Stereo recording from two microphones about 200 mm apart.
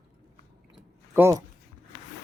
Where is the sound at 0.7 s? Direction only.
10° right (ahead or behind).